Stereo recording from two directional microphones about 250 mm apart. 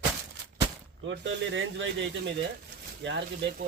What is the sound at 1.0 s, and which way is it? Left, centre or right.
Speech, right.